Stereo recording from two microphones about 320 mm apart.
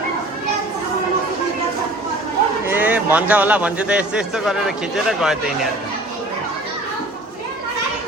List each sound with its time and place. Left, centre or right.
2.6 s a man's voice: centre